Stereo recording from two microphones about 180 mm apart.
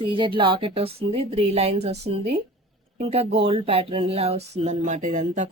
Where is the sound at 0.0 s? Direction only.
25° right (ahead or behind).